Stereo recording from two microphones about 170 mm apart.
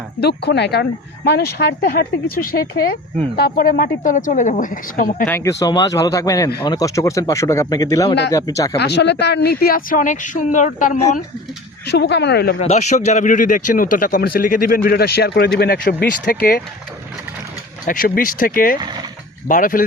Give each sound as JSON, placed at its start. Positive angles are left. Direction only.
{"t": 0.2, "sound": "a woman's voice", "side_deg": 75}
{"t": 5.2, "sound": "speech", "side_deg": 15}
{"t": 8.8, "sound": "speech", "side_deg": 80}
{"t": 11.9, "sound": "speech", "side_deg": 80}
{"t": 12.5, "sound": "speech", "side_deg": 40}
{"t": 17.8, "sound": "a woman's voice", "side_deg": 55}